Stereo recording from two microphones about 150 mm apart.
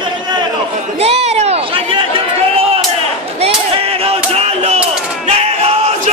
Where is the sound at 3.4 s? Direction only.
40° right (ahead or behind).